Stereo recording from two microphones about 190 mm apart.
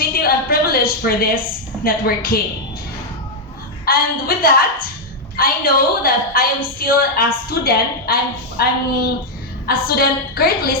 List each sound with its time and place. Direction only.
0.2 s a sound: 50° left (ahead or behind)
1.8 s a woman's voice: 50° left (ahead or behind)
3.8 s a woman's voice: 50° left (ahead or behind)